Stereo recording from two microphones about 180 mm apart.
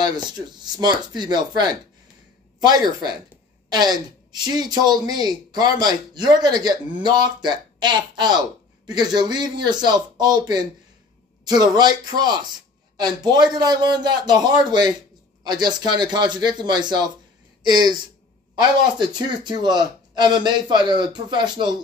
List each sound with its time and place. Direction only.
0.0 s a woman's voice: 25° right (ahead or behind)
3.7 s a woman's voice: 25° right (ahead or behind)